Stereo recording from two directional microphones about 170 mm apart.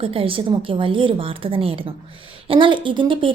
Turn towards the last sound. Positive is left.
turn(degrees=-30)  # may be behind; listen again after turning